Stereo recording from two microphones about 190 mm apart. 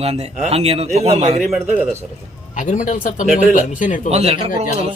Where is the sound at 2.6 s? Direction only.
40° left (ahead or behind).